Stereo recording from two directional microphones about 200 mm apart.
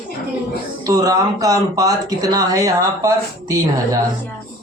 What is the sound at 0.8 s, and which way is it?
Speech, 20° right (ahead or behind).